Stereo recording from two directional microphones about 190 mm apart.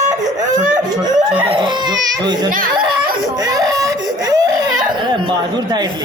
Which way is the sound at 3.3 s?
20° right (ahead or behind).